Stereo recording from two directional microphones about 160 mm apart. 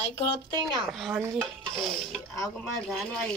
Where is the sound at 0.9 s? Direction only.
Centre (ahead or behind).